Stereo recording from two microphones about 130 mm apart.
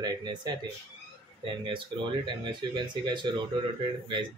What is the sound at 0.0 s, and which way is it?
Speech, 35° right (ahead or behind).